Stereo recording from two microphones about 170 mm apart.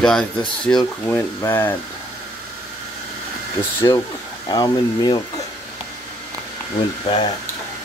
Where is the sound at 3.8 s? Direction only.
20° left (ahead or behind).